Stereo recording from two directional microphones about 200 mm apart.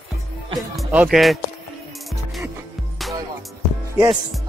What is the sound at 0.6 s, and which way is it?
Speech, centre (ahead or behind).